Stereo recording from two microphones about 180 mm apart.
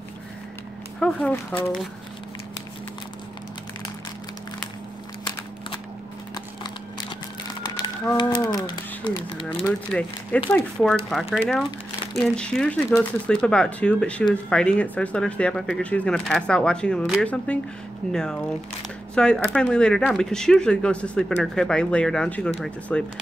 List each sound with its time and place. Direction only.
0.9 s speech: 5° left (ahead or behind)
7.4 s a sound: 20° left (ahead or behind)
8.2 s speech: 25° left (ahead or behind)
9.6 s speech: 5° left (ahead or behind)